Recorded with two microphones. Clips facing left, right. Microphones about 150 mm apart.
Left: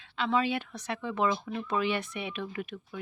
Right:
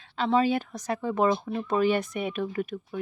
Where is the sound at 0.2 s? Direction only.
40° right (ahead or behind).